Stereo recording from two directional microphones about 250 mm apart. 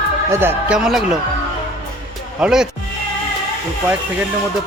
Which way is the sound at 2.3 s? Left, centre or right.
Centre.